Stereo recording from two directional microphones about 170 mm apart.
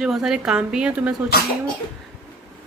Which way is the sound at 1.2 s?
60° left (ahead or behind).